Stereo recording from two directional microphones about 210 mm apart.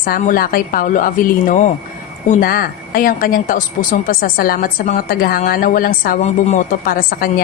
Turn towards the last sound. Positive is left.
turn(degrees=45)  # may be behind; listen again after turning